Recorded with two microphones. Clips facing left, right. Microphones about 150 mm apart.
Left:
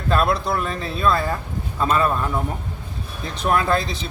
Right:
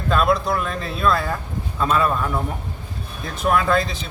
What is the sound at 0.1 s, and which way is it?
A man's voice, centre (ahead or behind).